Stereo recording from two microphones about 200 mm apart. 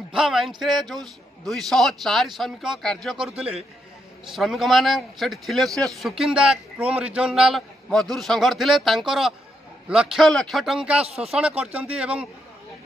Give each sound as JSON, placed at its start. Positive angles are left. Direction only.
{"t": 0.1, "sound": "a man's voice", "side_deg": 0}
{"t": 11.1, "sound": "speech", "side_deg": -30}
{"t": 11.3, "sound": "speech", "side_deg": -5}